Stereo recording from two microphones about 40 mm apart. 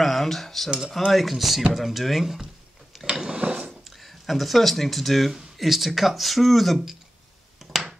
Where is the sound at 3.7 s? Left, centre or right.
Centre.